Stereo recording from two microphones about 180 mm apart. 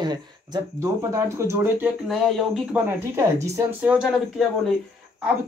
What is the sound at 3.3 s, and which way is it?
Speech, 15° right (ahead or behind).